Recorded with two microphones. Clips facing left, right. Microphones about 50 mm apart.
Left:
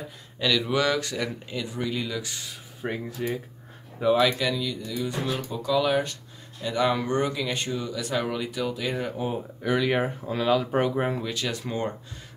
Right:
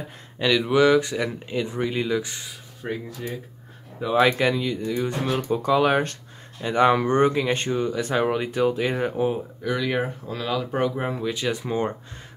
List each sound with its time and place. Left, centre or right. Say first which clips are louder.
0.4 s speech: right 5 dB; right
2.8 s speech: left 1 dB; centre
4.2 s speech: right 4 dB; right
9.6 s speech: left 3 dB; centre
11.2 s speech: right 4 dB; centre